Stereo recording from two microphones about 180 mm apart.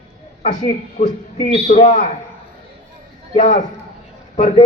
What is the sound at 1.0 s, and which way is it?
Speech, 40° left (ahead or behind).